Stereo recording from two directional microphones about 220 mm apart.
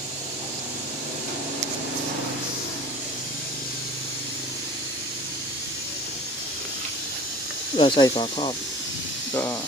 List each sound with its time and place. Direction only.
7.8 s speech: 20° left (ahead or behind)
9.3 s speech: 10° left (ahead or behind)